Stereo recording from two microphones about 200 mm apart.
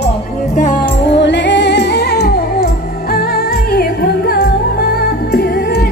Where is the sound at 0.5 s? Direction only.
40° left (ahead or behind).